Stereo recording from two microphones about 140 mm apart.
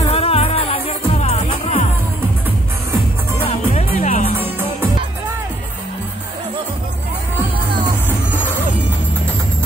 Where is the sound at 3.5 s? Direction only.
55° left (ahead or behind).